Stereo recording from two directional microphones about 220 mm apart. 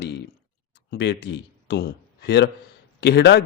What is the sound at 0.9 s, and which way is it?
A man's voice, 50° left (ahead or behind).